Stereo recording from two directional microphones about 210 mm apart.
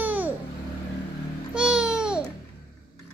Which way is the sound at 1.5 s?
5° right (ahead or behind).